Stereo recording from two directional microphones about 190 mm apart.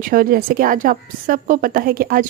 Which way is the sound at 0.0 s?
50° right (ahead or behind).